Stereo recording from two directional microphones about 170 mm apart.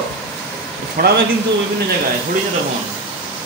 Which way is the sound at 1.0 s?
60° right (ahead or behind).